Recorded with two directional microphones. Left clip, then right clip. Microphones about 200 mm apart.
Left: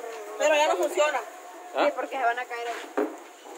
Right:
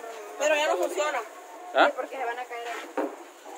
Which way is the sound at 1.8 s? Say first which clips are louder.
Right 3 dB; 25° right (ahead or behind).